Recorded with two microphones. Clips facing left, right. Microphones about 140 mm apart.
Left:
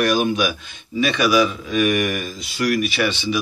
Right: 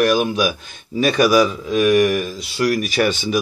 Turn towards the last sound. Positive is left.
turn(degrees=-45)  # may be behind; listen again after turning